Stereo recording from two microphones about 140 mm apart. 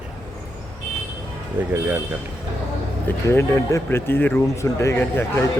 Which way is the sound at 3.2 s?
20° left (ahead or behind).